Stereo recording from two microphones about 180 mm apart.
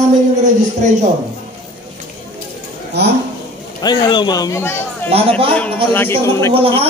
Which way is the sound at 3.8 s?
25° left (ahead or behind).